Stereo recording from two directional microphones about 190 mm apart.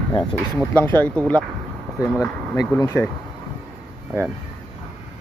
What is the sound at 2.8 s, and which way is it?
Speech, 15° left (ahead or behind).